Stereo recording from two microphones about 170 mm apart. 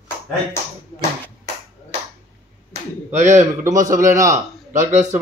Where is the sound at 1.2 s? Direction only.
15° left (ahead or behind).